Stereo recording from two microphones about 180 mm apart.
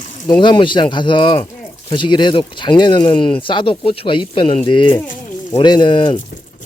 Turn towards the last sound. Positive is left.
turn(degrees=25)  # may be behind; listen again after turning